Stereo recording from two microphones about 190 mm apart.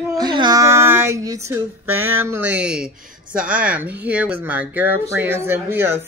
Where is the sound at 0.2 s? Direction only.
20° right (ahead or behind).